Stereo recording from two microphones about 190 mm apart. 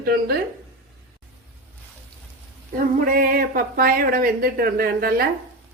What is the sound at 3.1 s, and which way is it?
Speech, 50° right (ahead or behind).